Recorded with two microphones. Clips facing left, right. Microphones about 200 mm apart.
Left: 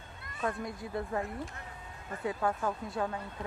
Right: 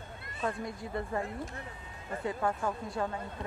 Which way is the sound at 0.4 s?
Centre (ahead or behind).